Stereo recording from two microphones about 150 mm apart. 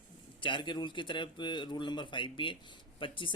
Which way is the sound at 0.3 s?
35° left (ahead or behind).